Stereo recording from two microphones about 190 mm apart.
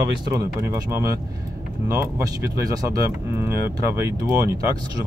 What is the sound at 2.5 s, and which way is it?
Speech, 20° right (ahead or behind).